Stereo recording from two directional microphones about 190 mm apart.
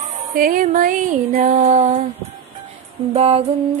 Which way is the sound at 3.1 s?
35° right (ahead or behind).